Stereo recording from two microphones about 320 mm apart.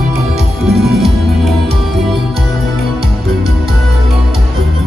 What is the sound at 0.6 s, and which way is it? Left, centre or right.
Music, centre.